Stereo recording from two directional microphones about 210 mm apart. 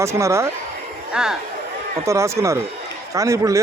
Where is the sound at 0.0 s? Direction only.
15° right (ahead or behind).